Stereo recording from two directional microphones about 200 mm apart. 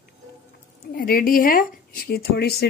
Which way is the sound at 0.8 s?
45° left (ahead or behind).